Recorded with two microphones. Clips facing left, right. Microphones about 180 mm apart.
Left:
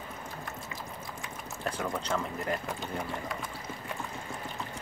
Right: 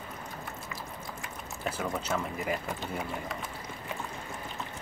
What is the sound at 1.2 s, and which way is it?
Speech, 5° right (ahead or behind).